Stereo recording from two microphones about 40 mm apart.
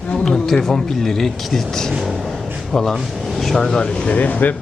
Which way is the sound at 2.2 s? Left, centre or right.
Centre.